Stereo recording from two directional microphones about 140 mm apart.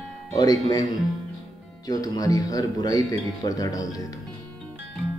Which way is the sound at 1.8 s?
25° left (ahead or behind).